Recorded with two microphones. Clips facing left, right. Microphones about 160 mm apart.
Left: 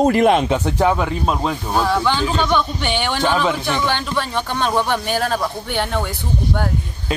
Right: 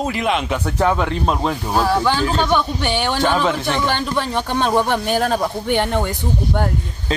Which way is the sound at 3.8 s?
10° right (ahead or behind).